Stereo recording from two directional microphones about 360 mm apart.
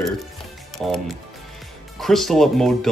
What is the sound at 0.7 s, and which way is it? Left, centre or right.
Speech, centre.